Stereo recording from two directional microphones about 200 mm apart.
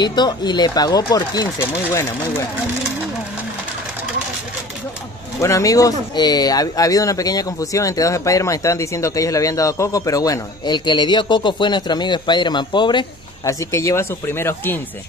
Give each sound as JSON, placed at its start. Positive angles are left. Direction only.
{"t": 0.0, "sound": "speech", "side_deg": 20}
{"t": 5.4, "sound": "speech", "side_deg": 15}